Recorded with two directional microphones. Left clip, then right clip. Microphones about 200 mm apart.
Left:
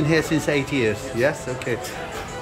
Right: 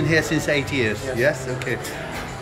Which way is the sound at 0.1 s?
10° left (ahead or behind).